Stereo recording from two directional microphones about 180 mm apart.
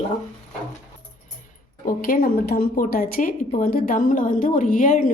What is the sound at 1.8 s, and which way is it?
A woman's voice, 50° left (ahead or behind).